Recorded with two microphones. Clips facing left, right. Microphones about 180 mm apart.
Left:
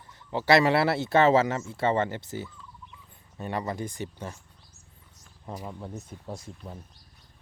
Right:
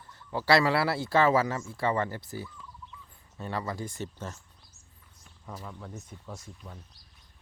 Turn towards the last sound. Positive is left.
turn(degrees=30)  # may be behind; listen again after turning